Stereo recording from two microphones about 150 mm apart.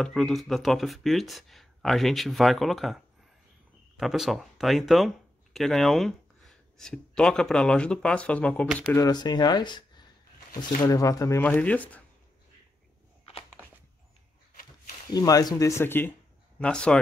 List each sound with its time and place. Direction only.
0.0 s speech: 5° left (ahead or behind)
8.8 s speech: 25° left (ahead or behind)
11.4 s speech: 10° left (ahead or behind)
15.1 s speech: 25° left (ahead or behind); by 17.0 s 5° left (ahead or behind)